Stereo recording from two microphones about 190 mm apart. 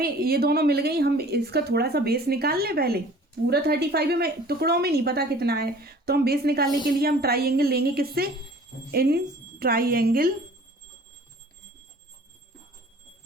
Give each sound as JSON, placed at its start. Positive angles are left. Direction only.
{"t": 0.0, "sound": "a woman's voice", "side_deg": -55}